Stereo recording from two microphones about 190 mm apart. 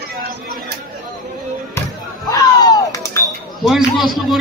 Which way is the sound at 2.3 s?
20° left (ahead or behind).